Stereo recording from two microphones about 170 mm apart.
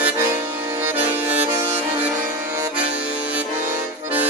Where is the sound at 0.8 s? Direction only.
10° right (ahead or behind).